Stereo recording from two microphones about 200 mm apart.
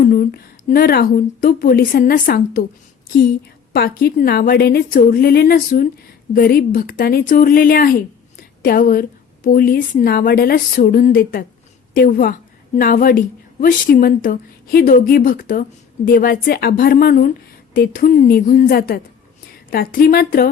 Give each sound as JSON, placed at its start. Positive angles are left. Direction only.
{"t": 0.0, "sound": "a woman's voice", "side_deg": 45}
{"t": 3.7, "sound": "a woman's voice", "side_deg": 50}